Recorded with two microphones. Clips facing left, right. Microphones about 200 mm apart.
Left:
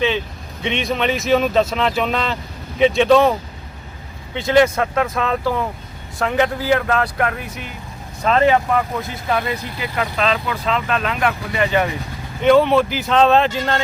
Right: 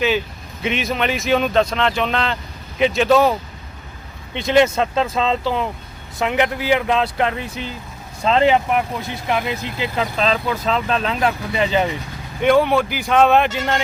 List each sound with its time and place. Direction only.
0.6 s speech: centre (ahead or behind)
4.4 s speech: 20° right (ahead or behind)
12.5 s speech: 5° right (ahead or behind)